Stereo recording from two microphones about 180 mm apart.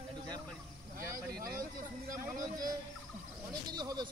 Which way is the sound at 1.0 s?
20° right (ahead or behind).